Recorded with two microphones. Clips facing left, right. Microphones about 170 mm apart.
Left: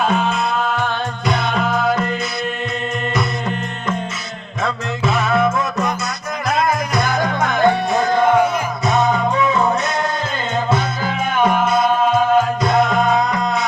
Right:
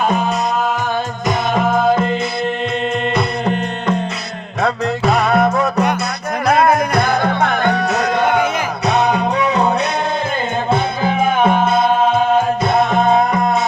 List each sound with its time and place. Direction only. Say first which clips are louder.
1.5 s music: right 6 dB; 20° right (ahead or behind)
4.6 s music: right 5 dB; 40° right (ahead or behind)
6.5 s music: right 5 dB; 60° right (ahead or behind)
11.0 s music: right 4 dB; 25° right (ahead or behind)
13.1 s music: right 3 dB; 55° right (ahead or behind)